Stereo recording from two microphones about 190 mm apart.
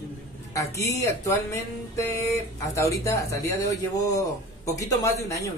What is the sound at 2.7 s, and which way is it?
Speech, 15° left (ahead or behind).